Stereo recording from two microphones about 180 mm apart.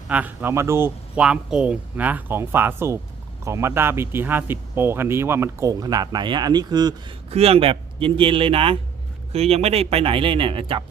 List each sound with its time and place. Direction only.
0.1 s a man's voice: 10° right (ahead or behind)
7.3 s speech: 35° right (ahead or behind)